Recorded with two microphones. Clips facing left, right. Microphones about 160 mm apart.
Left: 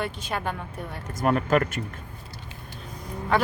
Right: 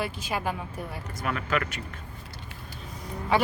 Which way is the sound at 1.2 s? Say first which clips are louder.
Left 7 dB; 45° left (ahead or behind).